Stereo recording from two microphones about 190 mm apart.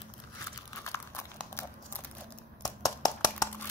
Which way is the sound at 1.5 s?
15° left (ahead or behind).